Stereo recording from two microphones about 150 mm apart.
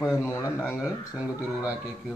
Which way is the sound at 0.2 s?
20° left (ahead or behind).